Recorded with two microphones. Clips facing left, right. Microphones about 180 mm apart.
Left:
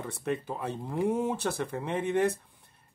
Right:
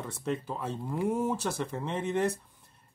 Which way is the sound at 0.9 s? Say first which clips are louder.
Left 2 dB; 15° left (ahead or behind).